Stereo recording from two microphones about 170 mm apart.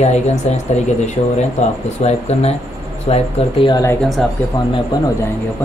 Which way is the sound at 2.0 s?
40° left (ahead or behind).